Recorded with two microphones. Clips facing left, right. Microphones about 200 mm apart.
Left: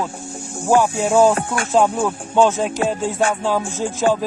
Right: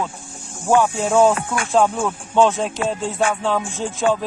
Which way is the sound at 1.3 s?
40° left (ahead or behind).